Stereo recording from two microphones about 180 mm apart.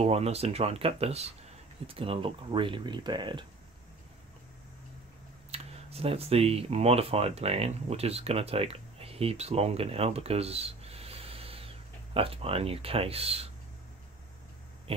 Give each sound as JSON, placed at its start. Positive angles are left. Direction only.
{"t": 0.0, "sound": "speech", "side_deg": -35}
{"t": 5.5, "sound": "speech", "side_deg": -35}